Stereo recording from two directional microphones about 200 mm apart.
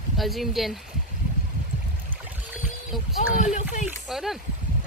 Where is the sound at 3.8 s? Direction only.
Centre (ahead or behind).